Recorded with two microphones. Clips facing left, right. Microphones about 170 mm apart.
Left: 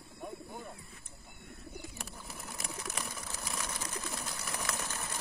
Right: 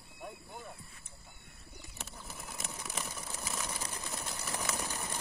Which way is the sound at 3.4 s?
Centre (ahead or behind).